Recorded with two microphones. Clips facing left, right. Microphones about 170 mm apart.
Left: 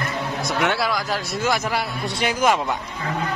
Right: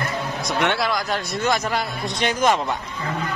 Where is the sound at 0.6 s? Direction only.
Centre (ahead or behind).